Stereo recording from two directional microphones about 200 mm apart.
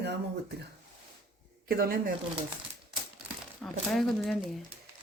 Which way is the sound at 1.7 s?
50° right (ahead or behind).